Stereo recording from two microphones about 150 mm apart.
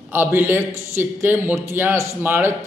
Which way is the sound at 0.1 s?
15° right (ahead or behind).